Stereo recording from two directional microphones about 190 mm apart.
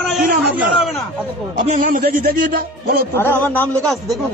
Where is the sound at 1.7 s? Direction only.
45° right (ahead or behind).